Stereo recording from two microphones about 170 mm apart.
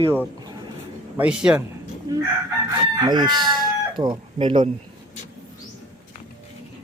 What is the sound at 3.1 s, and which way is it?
Speech, 25° right (ahead or behind).